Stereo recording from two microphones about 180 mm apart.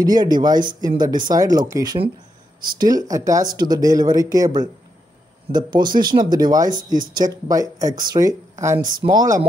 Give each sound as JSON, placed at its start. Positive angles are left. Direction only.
{"t": 0.0, "sound": "speech", "side_deg": -20}